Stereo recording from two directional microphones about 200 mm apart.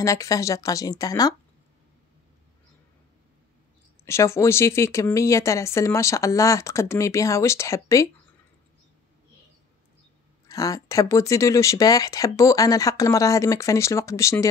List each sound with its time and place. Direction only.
0.0 s speech: 15° left (ahead or behind)
4.0 s speech: 15° left (ahead or behind)
10.5 s speech: 15° left (ahead or behind)